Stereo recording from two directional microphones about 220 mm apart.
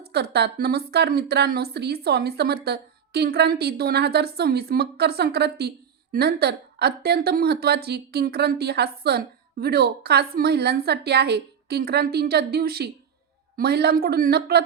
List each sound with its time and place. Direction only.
0.0 s a woman's voice: 45° right (ahead or behind)